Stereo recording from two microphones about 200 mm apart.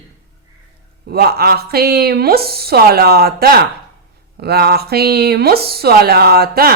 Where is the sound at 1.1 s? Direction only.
50° right (ahead or behind).